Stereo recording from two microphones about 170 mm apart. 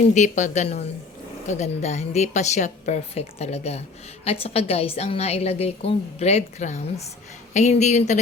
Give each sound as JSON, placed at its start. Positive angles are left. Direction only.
{"t": 0.1, "sound": "a woman's voice", "side_deg": 45}